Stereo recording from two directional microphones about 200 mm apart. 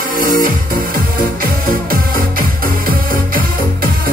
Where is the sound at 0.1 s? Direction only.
45° right (ahead or behind).